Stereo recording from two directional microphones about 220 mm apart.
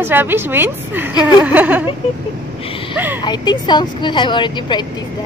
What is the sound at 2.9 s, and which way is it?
Speech, 10° right (ahead or behind).